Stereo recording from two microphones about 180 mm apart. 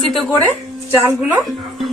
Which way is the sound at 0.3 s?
10° left (ahead or behind).